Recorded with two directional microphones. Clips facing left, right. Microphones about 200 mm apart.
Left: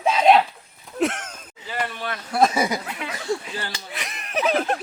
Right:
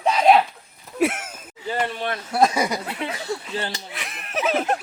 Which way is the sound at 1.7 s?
25° right (ahead or behind).